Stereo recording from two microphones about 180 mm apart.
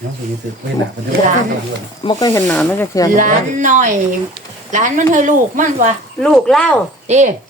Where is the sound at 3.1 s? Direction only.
45° right (ahead or behind).